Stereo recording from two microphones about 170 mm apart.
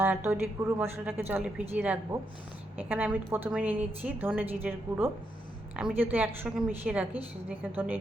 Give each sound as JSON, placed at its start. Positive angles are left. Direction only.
{"t": 0.0, "sound": "a woman's voice", "side_deg": -10}